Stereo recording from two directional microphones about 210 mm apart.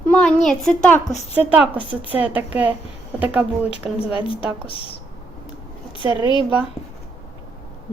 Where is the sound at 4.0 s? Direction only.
25° left (ahead or behind).